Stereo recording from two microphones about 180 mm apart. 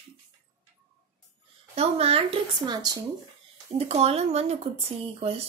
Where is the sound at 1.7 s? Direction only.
35° right (ahead or behind).